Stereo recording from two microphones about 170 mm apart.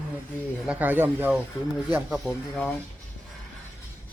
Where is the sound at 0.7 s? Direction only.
10° right (ahead or behind).